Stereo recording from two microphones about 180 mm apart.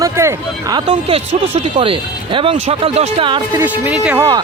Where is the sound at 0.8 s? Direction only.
35° right (ahead or behind).